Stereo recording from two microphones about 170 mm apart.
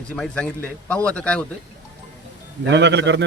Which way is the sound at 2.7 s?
90° right.